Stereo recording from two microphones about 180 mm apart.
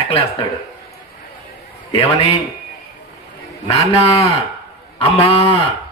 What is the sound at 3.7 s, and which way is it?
A man's voice, 35° left (ahead or behind).